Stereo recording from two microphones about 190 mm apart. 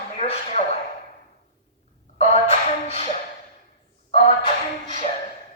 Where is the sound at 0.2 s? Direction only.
35° left (ahead or behind).